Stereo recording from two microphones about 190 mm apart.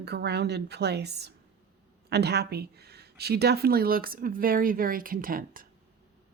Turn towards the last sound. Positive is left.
turn(degrees=-50)  # may be behind; listen again after turning